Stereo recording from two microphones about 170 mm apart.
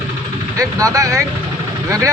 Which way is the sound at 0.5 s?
20° right (ahead or behind).